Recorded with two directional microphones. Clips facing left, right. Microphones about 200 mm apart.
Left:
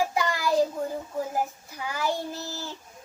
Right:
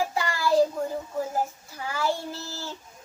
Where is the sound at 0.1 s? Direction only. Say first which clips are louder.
Left 1 dB; 15° left (ahead or behind).